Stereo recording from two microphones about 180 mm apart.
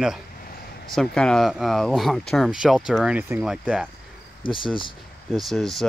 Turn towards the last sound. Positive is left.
turn(degrees=0)  # may be behind; listen again after turning